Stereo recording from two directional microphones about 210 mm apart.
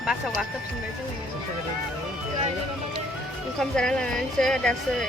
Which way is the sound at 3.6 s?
5° left (ahead or behind).